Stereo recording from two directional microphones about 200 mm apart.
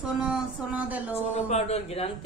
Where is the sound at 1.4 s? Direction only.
30° left (ahead or behind).